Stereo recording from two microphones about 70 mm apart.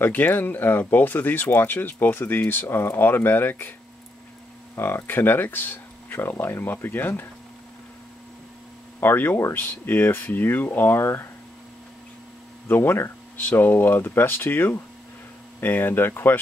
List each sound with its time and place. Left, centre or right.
0.0 s speech: left
4.7 s speech: left
9.0 s speech: left
12.6 s speech: left